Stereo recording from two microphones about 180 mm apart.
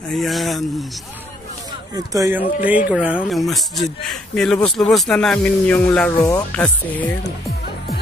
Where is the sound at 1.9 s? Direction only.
15° right (ahead or behind); by 7.1 s 10° left (ahead or behind).